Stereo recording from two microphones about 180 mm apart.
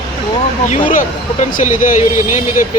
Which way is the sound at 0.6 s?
45° left (ahead or behind).